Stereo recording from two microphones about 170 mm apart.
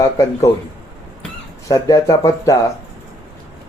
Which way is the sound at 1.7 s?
20° left (ahead or behind).